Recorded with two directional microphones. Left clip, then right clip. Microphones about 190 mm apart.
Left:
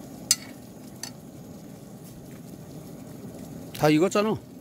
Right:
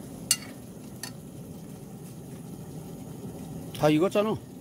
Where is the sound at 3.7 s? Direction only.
30° left (ahead or behind).